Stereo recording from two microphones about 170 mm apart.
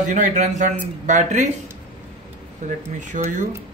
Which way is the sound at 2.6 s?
45° right (ahead or behind).